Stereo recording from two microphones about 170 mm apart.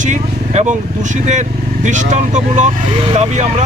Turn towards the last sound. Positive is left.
turn(degrees=-40)  # may be behind; listen again after turning